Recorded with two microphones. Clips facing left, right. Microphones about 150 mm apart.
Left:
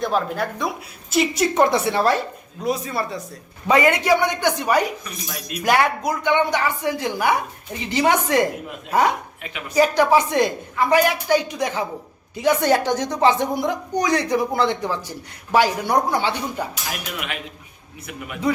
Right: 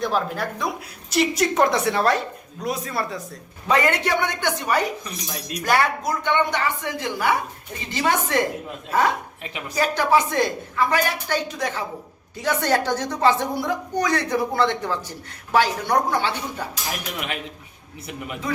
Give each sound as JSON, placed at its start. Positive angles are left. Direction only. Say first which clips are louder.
{"t": 0.0, "sound": "a woman's voice", "louder": "left 2 dB", "side_deg": 0}
{"t": 3.7, "sound": "a woman's voice", "louder": "left 4 dB", "side_deg": 10}
{"t": 5.0, "sound": "speech", "louder": "even", "side_deg": -35}
{"t": 5.6, "sound": "a woman's voice", "louder": "left 2 dB", "side_deg": 15}